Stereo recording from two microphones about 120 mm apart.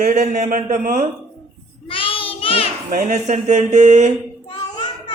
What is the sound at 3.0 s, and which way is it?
Speech, 80° right.